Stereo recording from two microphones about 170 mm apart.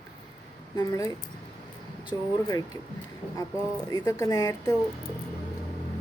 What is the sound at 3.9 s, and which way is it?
Speech, 20° left (ahead or behind).